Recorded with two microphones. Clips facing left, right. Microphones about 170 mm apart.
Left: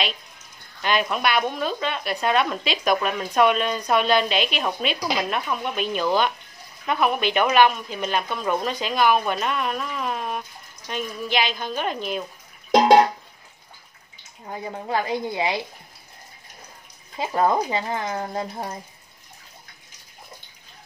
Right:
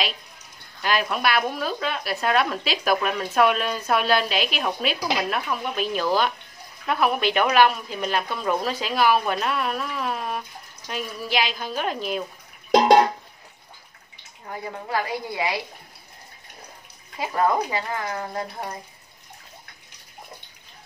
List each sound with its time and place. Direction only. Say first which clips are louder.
0.8 s a woman's voice: left 1 dB; 5° right (ahead or behind)
14.4 s speech: left 1 dB; 20° left (ahead or behind)
17.2 s speech: left 1 dB; 25° left (ahead or behind)